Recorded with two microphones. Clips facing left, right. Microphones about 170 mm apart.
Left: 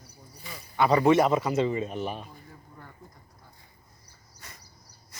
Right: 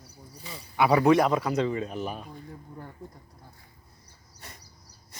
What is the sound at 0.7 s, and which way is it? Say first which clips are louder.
A man's voice: even; 5° right (ahead or behind).